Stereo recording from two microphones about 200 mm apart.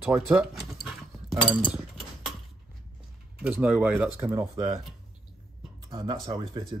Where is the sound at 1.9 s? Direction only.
Centre (ahead or behind).